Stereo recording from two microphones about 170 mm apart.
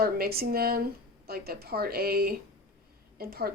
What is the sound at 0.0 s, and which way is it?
Speech, 65° right (ahead or behind).